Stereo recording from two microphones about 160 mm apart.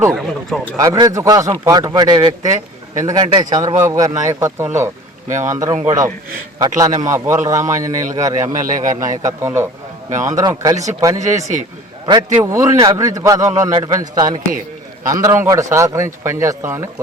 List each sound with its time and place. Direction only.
0.1 s speech: centre (ahead or behind)
0.8 s a man's voice: 25° right (ahead or behind)